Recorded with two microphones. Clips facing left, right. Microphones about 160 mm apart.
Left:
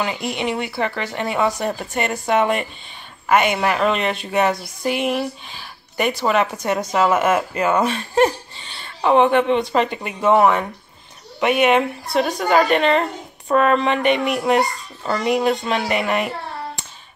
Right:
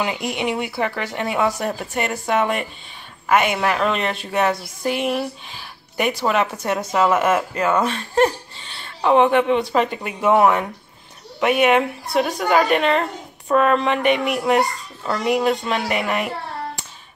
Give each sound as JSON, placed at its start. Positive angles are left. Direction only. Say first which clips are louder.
{"t": 0.0, "sound": "speech", "louder": "even", "side_deg": -10}